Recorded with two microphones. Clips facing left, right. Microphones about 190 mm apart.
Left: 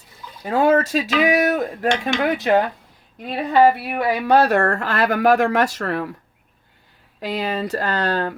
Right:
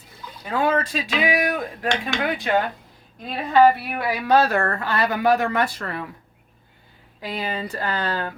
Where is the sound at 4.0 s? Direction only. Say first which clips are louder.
Left 5 dB; 25° left (ahead or behind).